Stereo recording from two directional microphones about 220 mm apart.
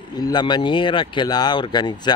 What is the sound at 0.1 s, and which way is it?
Speech, 20° left (ahead or behind).